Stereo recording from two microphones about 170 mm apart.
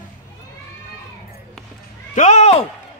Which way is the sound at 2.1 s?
45° left (ahead or behind).